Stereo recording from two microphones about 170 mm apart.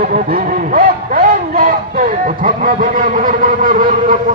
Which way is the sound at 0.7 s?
55° right (ahead or behind).